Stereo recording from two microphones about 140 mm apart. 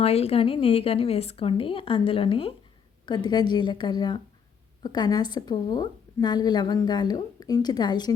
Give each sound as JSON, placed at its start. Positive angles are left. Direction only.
{"t": 0.0, "sound": "a woman's voice", "side_deg": 45}